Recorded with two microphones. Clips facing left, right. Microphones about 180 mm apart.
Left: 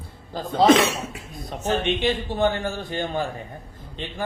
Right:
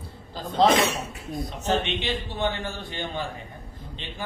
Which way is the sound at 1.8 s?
45° left (ahead or behind).